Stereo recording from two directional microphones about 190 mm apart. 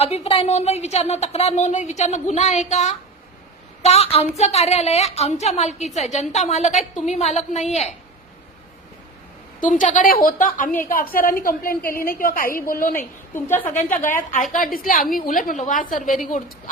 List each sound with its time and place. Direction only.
0.0 s speech: 30° left (ahead or behind)
9.6 s a woman's voice: 40° left (ahead or behind)
13.0 s a woman's voice: 10° left (ahead or behind)
13.7 s a woman's voice: 40° left (ahead or behind)